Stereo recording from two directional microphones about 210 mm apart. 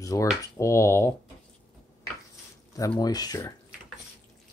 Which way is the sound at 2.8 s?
20° left (ahead or behind).